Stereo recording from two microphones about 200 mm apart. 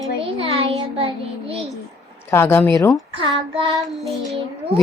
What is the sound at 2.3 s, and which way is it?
Speech, 10° left (ahead or behind).